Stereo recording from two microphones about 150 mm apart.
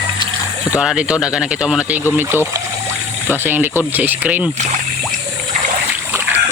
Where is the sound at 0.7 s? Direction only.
5° right (ahead or behind).